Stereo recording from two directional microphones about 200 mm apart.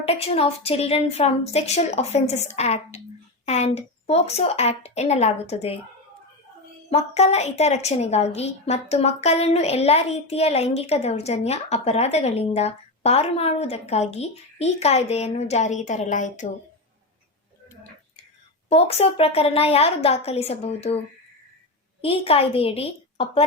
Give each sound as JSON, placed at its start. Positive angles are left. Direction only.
{"t": 0.0, "sound": "a woman's voice", "side_deg": 30}
{"t": 6.9, "sound": "a woman's voice", "side_deg": 35}
{"t": 18.7, "sound": "a woman's voice", "side_deg": 30}
{"t": 22.0, "sound": "a woman's voice", "side_deg": 30}